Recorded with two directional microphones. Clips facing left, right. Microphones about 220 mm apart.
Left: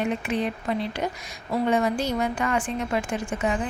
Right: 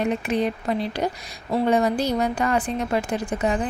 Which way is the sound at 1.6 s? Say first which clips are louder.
Right 3 dB; 35° right (ahead or behind).